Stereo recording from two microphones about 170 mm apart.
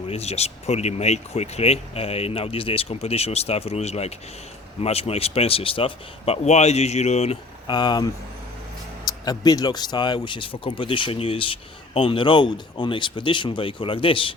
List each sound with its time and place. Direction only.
0.1 s speech: 40° left (ahead or behind)